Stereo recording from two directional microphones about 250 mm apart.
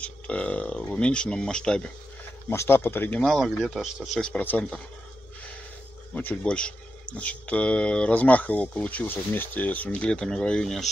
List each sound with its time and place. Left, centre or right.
0.0 s speech: centre
6.1 s speech: centre